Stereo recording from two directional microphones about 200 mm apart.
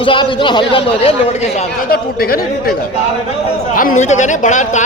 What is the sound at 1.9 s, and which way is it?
Speech, 50° left (ahead or behind).